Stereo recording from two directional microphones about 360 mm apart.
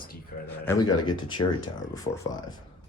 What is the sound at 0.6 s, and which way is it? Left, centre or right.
Speech, centre.